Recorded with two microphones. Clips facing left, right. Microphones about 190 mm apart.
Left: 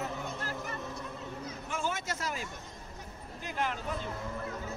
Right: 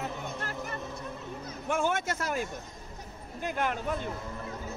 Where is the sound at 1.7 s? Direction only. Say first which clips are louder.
Right 7 dB; 55° right (ahead or behind).